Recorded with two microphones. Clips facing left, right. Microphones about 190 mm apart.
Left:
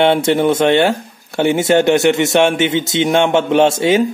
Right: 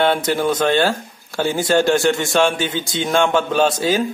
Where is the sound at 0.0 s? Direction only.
25° left (ahead or behind).